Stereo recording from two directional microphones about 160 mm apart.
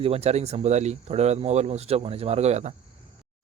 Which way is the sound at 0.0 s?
40° right (ahead or behind).